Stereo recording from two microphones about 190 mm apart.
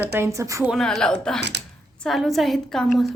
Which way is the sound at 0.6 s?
Centre (ahead or behind).